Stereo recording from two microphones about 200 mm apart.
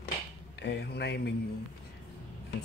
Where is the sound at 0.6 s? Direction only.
55° left (ahead or behind).